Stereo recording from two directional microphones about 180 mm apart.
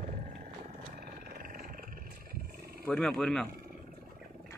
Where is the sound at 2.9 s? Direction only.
5° left (ahead or behind).